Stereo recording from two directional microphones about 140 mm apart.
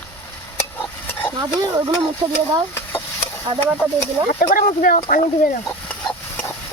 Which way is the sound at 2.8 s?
15° left (ahead or behind).